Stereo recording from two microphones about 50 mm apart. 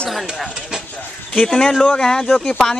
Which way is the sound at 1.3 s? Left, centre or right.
Centre.